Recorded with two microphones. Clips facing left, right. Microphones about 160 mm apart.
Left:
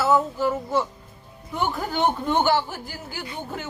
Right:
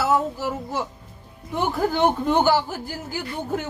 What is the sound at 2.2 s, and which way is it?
Speech, 40° right (ahead or behind).